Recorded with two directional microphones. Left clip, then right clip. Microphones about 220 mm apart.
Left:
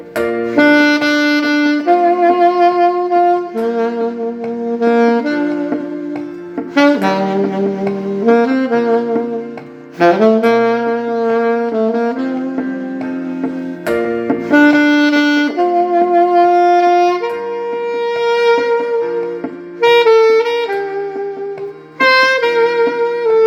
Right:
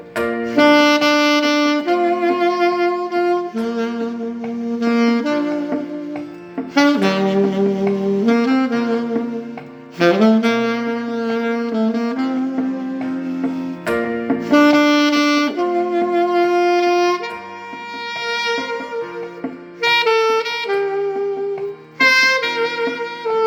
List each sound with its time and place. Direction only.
0.5 s saxophone: 10° right (ahead or behind)
6.7 s saxophone: 15° right (ahead or behind)
13.8 s music: 40° left (ahead or behind)
14.5 s saxophone: 10° right (ahead or behind)
18.2 s music: 10° right (ahead or behind)
19.8 s saxophone: 10° right (ahead or behind)
21.9 s saxophone: 15° right (ahead or behind)
23.2 s music: 15° right (ahead or behind)